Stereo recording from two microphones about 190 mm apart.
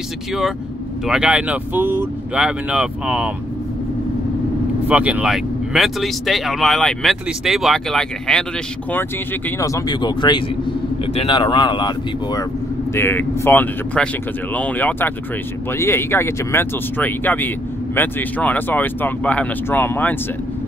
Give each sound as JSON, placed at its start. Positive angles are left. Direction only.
{"t": 1.0, "sound": "speech", "side_deg": -5}
{"t": 4.8, "sound": "speech", "side_deg": -5}
{"t": 9.6, "sound": "speech", "side_deg": 20}
{"t": 12.9, "sound": "speech", "side_deg": 10}